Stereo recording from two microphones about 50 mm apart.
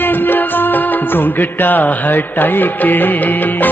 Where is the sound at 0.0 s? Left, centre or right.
Left.